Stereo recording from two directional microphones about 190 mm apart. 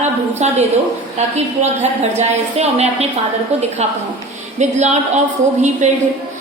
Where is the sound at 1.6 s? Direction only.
35° right (ahead or behind).